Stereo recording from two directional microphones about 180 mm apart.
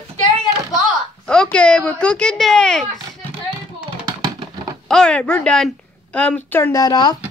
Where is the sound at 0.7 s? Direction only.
5° left (ahead or behind).